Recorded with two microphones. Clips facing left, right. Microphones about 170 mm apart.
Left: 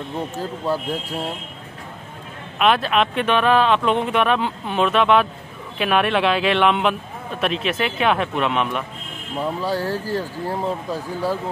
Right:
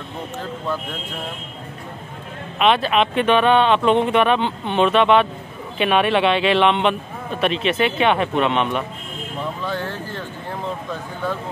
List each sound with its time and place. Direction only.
0.7 s speech: 35° left (ahead or behind)
2.6 s speech: centre (ahead or behind)
9.6 s speech: 35° left (ahead or behind)